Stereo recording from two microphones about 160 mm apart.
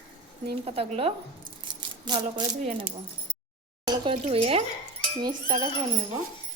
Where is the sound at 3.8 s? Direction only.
30° right (ahead or behind).